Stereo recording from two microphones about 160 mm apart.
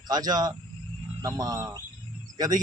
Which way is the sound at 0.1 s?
25° right (ahead or behind).